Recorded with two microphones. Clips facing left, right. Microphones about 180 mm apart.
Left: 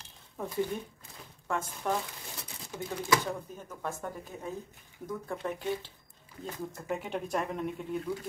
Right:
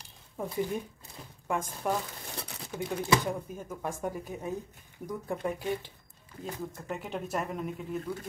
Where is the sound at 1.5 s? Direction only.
10° right (ahead or behind).